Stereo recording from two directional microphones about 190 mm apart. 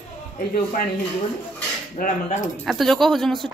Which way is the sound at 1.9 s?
45° left (ahead or behind).